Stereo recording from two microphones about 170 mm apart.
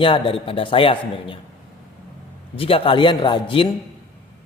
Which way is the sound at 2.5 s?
35° left (ahead or behind).